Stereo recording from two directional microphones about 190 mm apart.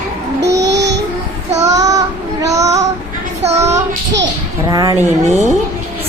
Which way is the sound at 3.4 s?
35° right (ahead or behind).